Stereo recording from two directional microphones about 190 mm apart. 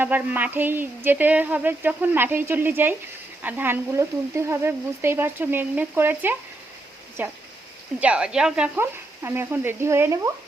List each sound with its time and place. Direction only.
0.0 s speech: 10° right (ahead or behind)